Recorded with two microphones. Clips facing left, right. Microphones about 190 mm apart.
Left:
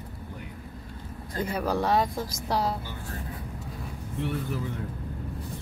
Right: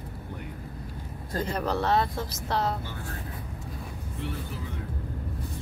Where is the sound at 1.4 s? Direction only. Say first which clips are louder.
Left 1 dB; 10° left (ahead or behind).